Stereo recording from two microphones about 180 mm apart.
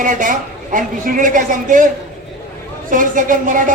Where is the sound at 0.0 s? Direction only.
45° right (ahead or behind).